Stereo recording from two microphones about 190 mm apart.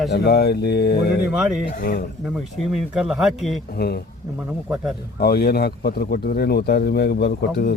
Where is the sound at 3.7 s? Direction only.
55° left (ahead or behind).